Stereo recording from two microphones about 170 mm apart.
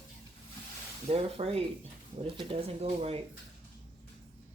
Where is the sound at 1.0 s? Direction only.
35° right (ahead or behind).